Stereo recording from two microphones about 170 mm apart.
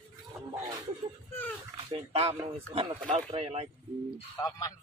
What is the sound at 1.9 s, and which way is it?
Speech, 35° right (ahead or behind).